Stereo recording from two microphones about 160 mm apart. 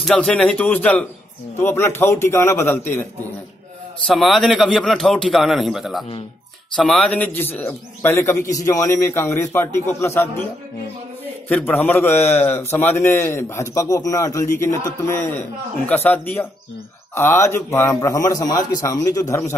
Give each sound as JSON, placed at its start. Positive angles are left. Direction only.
{"t": 0.0, "sound": "a man's voice", "side_deg": 5}
{"t": 4.1, "sound": "a man's voice", "side_deg": 0}
{"t": 11.4, "sound": "a man's voice", "side_deg": 10}